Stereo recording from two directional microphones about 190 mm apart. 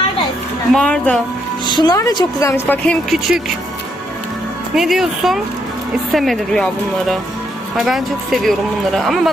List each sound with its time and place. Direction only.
0.7 s speech: 5° left (ahead or behind)
1.7 s a woman's voice: 20° left (ahead or behind); by 3.4 s centre (ahead or behind)
4.7 s speech: centre (ahead or behind)